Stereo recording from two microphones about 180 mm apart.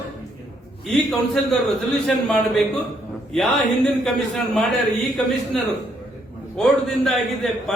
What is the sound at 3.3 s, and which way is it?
A man's voice, centre (ahead or behind).